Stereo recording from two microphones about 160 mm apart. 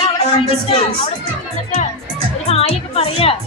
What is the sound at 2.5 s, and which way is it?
Music, 40° left (ahead or behind).